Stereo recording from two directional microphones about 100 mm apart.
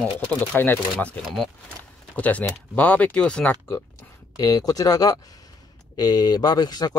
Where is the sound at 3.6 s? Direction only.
25° left (ahead or behind).